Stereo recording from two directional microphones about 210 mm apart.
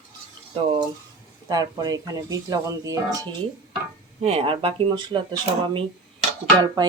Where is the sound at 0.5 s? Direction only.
20° right (ahead or behind).